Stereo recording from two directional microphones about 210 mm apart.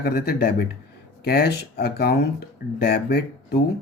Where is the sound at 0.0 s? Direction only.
45° left (ahead or behind).